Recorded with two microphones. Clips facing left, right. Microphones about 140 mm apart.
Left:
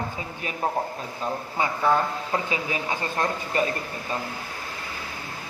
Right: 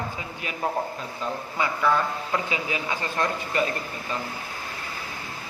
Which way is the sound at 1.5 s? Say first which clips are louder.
Left 1 dB; 30° left (ahead or behind).